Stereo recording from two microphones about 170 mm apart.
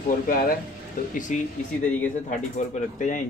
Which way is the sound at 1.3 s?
45° left (ahead or behind).